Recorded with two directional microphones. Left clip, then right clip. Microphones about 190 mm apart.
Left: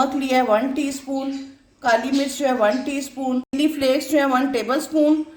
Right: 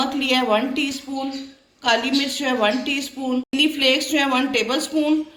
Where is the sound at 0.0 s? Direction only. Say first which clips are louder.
Left 1 dB; 50° left (ahead or behind).